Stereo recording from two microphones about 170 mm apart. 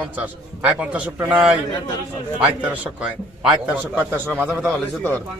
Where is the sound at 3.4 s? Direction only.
5° right (ahead or behind).